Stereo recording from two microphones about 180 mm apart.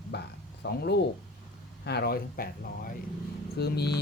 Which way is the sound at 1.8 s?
65° left (ahead or behind).